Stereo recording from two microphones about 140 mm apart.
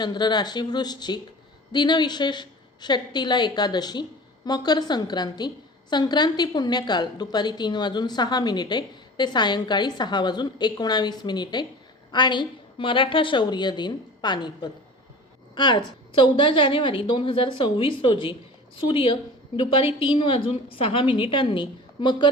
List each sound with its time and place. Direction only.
0.0 s a woman's voice: 30° left (ahead or behind)